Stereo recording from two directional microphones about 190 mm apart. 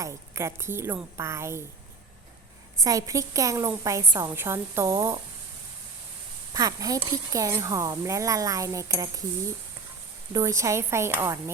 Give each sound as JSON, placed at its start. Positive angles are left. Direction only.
{"t": 0.0, "sound": "a woman's voice", "side_deg": -15}
{"t": 2.8, "sound": "a woman's voice", "side_deg": -15}
{"t": 6.5, "sound": "a woman's voice", "side_deg": -20}
{"t": 10.3, "sound": "a woman's voice", "side_deg": -15}